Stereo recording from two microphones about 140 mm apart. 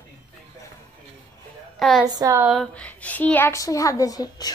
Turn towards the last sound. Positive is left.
turn(degrees=25)  # may be behind; listen again after turning